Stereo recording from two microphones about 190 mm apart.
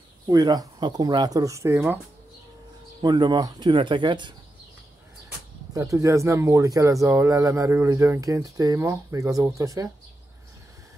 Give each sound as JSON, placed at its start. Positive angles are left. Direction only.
{"t": 0.3, "sound": "speech", "side_deg": -20}
{"t": 3.0, "sound": "speech", "side_deg": -20}
{"t": 5.7, "sound": "speech", "side_deg": -15}